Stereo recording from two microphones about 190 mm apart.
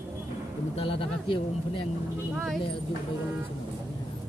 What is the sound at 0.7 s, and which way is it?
Speech, 30° left (ahead or behind).